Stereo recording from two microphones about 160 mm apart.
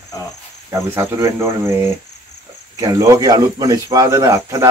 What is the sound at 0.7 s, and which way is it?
Speech, 15° right (ahead or behind).